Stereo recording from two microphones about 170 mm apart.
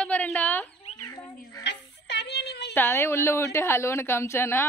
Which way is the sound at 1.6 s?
85° left.